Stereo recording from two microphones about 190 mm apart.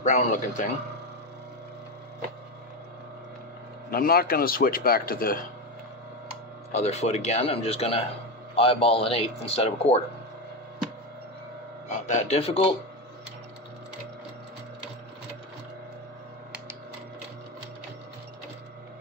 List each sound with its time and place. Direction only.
0.0 s speech: 40° left (ahead or behind)
3.9 s speech: 50° left (ahead or behind)
6.7 s speech: 35° left (ahead or behind)
12.1 s speech: 35° left (ahead or behind)